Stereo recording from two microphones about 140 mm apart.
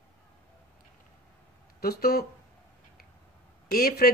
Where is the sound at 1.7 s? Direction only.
90° left.